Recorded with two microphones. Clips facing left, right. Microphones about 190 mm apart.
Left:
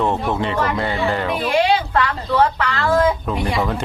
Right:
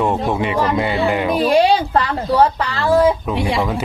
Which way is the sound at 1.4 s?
40° right (ahead or behind).